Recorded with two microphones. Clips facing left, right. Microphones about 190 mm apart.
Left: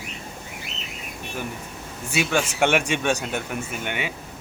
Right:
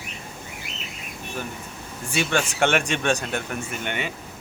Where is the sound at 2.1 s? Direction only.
5° left (ahead or behind).